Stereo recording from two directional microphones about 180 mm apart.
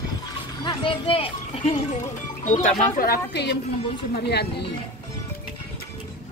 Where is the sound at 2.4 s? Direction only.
45° left (ahead or behind); by 4.7 s 65° left (ahead or behind).